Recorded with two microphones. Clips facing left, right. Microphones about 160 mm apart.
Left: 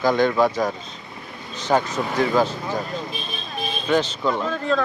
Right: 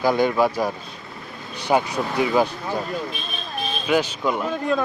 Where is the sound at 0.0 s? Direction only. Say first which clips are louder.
Left 1 dB; 10° right (ahead or behind).